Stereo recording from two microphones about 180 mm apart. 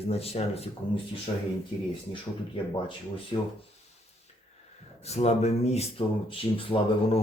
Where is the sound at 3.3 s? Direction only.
30° left (ahead or behind).